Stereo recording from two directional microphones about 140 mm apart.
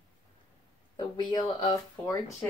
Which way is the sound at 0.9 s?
30° left (ahead or behind).